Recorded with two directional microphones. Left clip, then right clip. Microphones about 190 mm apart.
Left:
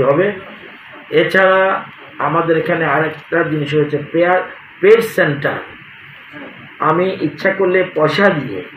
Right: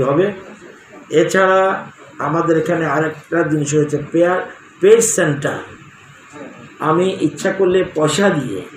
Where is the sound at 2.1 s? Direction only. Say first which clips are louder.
Left 2 dB; 35° right (ahead or behind).